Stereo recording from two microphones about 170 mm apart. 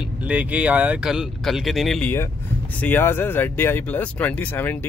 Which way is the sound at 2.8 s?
10° left (ahead or behind).